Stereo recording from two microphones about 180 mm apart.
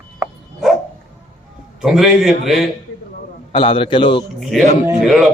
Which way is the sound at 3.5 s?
30° left (ahead or behind).